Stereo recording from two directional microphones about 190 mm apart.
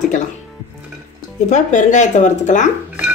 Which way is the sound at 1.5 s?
40° left (ahead or behind).